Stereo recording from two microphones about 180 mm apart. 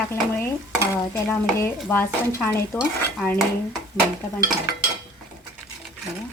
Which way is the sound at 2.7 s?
10° left (ahead or behind).